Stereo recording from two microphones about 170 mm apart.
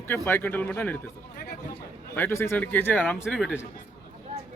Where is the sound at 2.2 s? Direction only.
15° left (ahead or behind).